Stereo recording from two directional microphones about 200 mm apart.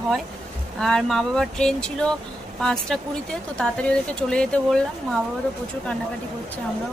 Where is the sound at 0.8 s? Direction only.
Centre (ahead or behind).